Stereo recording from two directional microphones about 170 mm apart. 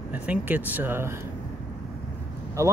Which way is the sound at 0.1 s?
10° right (ahead or behind).